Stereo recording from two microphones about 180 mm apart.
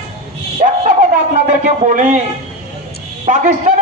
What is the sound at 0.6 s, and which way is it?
Dog, 40° right (ahead or behind).